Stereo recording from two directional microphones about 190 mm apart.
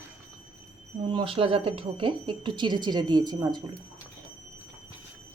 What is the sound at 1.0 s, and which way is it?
Speech, 25° right (ahead or behind).